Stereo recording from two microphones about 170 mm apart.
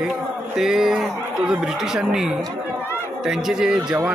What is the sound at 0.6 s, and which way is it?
Speech, centre (ahead or behind).